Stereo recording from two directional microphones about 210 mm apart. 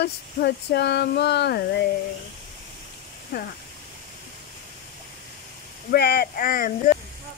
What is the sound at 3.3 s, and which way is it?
Speech, 50° left (ahead or behind).